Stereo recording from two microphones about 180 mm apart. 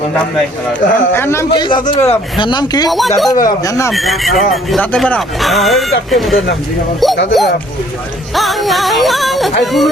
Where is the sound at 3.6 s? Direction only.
15° left (ahead or behind).